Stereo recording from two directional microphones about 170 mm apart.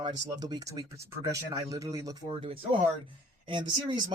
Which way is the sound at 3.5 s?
25° right (ahead or behind).